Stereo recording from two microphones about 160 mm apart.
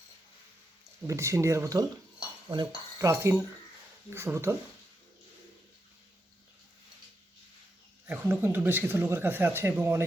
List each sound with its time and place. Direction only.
1.0 s cutlery: 20° right (ahead or behind)
4.1 s speech: 15° right (ahead or behind)
8.0 s speech: 10° right (ahead or behind)